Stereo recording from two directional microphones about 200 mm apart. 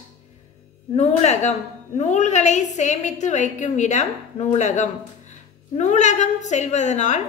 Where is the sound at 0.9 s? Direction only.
35° left (ahead or behind).